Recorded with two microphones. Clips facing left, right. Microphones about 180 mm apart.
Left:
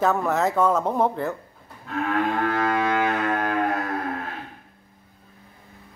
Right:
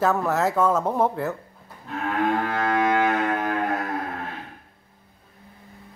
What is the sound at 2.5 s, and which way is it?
Cello, 20° right (ahead or behind).